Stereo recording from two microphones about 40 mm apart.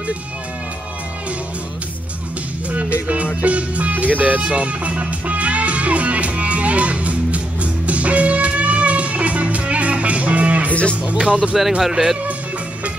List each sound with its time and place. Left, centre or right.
2.7 s music: right
3.9 s speech: right
4.5 s music: right
10.7 s speech: left
11.1 s speech: right
11.9 s speech: centre